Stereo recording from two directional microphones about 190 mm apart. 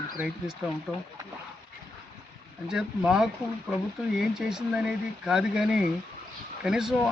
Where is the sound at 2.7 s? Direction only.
5° right (ahead or behind).